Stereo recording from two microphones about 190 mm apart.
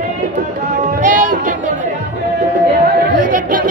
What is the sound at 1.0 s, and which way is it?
Music, 45° right (ahead or behind).